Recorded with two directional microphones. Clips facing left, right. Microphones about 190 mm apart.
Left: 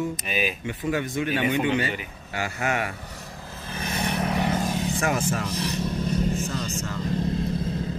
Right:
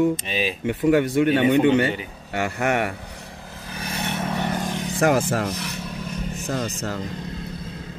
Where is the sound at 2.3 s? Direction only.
60° right (ahead or behind).